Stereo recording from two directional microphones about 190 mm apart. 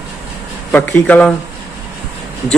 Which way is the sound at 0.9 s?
10° left (ahead or behind).